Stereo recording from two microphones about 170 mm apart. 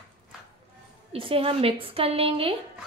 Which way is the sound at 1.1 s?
30° right (ahead or behind).